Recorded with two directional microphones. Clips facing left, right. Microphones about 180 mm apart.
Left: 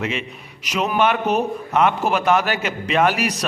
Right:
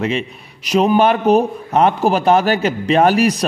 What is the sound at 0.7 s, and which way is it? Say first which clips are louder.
A man's voice: right 6 dB; 35° right (ahead or behind).